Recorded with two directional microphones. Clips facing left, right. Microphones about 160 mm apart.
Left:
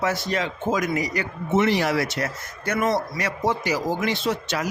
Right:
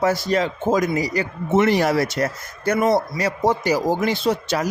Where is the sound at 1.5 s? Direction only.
50° right (ahead or behind).